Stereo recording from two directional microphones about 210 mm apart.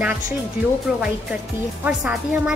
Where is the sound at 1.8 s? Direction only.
5° right (ahead or behind).